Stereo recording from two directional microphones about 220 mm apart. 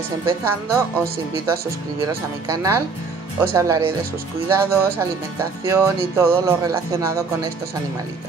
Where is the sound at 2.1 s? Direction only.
15° right (ahead or behind).